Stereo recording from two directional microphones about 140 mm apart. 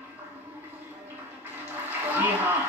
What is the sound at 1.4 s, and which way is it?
Toilet flush, 15° right (ahead or behind).